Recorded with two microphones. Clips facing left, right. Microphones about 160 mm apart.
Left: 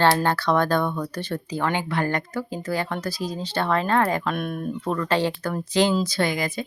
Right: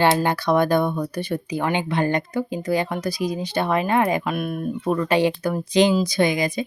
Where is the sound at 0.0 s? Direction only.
15° right (ahead or behind).